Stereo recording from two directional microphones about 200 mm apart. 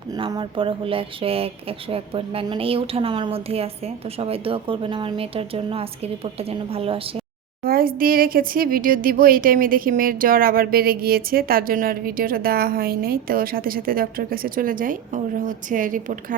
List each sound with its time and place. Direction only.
0.2 s speech: 25° right (ahead or behind)
7.6 s speech: 45° right (ahead or behind)